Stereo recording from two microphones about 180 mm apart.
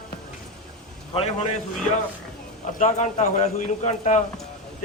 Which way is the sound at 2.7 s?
40° left (ahead or behind).